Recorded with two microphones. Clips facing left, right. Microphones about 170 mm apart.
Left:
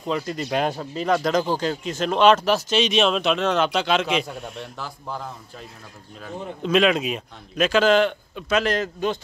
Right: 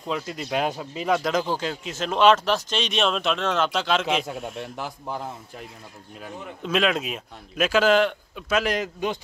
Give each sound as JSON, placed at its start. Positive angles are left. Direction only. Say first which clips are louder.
{"t": 0.0, "sound": "speech", "louder": "left 3 dB", "side_deg": -5}
{"t": 4.7, "sound": "a man's voice", "louder": "right 1 dB", "side_deg": -15}
{"t": 6.6, "sound": "speech", "louder": "left 4 dB", "side_deg": 0}